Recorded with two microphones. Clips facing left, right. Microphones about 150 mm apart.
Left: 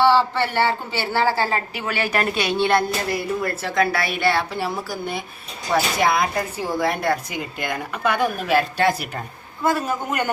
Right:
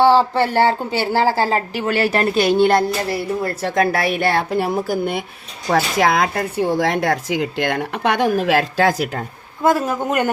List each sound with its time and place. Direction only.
0.0 s a woman's voice: 40° right (ahead or behind)
3.6 s a woman's voice: 45° right (ahead or behind)
5.7 s speech: 90° right